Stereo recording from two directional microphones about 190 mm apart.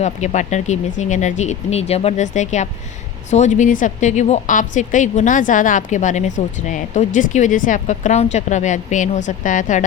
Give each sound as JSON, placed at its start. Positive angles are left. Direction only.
{"t": 0.0, "sound": "a woman's voice", "side_deg": 40}